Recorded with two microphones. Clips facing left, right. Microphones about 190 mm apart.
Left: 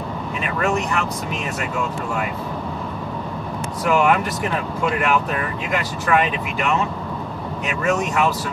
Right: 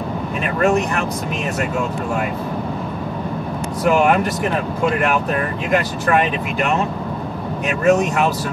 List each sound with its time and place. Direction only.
3.8 s speech: 45° right (ahead or behind)
7.6 s speech: 45° right (ahead or behind)